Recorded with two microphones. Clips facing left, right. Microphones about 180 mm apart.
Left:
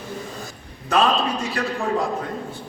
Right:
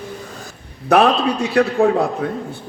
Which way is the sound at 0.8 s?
65° right (ahead or behind).